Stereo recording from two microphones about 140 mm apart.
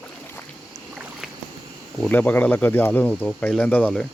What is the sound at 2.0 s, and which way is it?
Speech, 10° left (ahead or behind).